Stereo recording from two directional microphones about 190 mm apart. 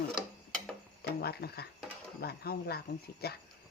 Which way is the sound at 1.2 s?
55° left (ahead or behind).